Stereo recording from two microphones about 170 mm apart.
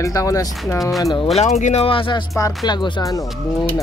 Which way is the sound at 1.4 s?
40° left (ahead or behind).